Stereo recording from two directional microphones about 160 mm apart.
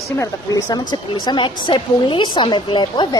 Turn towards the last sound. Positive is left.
turn(degrees=30)  # may be behind; listen again after turning